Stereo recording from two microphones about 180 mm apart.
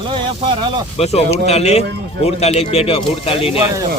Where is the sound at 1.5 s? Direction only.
35° left (ahead or behind).